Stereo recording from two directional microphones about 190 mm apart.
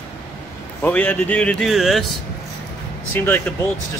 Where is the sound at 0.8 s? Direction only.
5° left (ahead or behind).